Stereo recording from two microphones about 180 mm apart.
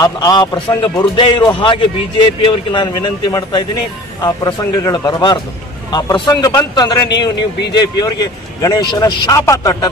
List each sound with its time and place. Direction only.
0.0 s a man's voice: 20° left (ahead or behind)